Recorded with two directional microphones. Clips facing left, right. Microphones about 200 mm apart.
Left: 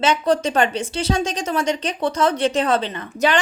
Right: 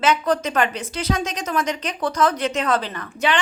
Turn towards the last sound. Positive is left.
turn(degrees=40)  # may be behind; listen again after turning